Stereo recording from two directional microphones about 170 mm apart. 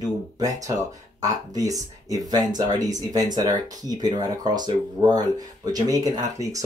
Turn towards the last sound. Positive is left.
turn(degrees=-20)  # may be behind; listen again after turning